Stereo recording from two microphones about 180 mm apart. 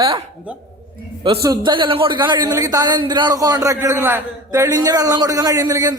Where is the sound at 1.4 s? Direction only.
25° right (ahead or behind).